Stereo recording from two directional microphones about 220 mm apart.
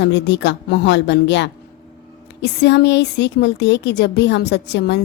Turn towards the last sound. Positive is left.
turn(degrees=50)  # may be behind; listen again after turning